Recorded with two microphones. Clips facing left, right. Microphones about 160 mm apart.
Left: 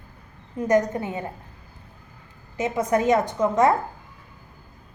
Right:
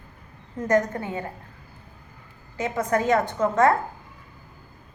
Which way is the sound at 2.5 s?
20° left (ahead or behind).